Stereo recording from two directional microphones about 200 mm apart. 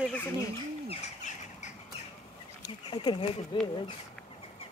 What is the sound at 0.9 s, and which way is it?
Bird, 35° left (ahead or behind).